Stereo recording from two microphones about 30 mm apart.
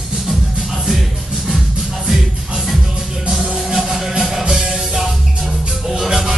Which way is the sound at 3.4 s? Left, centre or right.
Right.